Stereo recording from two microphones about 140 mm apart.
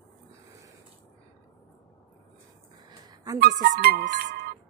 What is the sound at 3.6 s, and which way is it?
Speech, 80° right.